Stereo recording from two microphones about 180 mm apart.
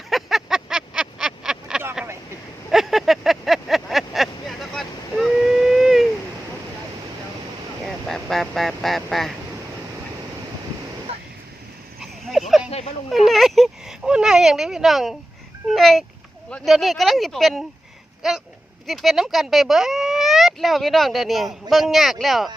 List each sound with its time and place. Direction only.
0.1 s a sound: centre (ahead or behind)
2.6 s vehicle: centre (ahead or behind)
7.9 s goose: centre (ahead or behind)
11.1 s waves: 35° right (ahead or behind)
11.9 s a sound: centre (ahead or behind)
16.5 s speech: centre (ahead or behind)